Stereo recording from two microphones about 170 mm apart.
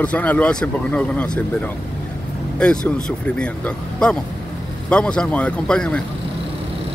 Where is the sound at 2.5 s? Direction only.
5° left (ahead or behind).